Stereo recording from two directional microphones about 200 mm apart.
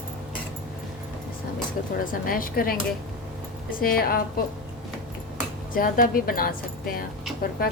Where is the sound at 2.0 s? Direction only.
45° left (ahead or behind).